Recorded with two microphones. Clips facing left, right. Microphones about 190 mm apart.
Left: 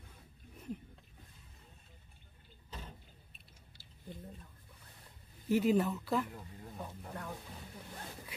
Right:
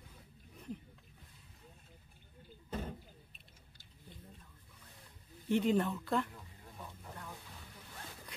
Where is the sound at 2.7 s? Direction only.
55° right (ahead or behind).